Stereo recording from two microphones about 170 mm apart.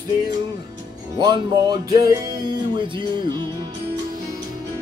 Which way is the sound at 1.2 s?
25° right (ahead or behind).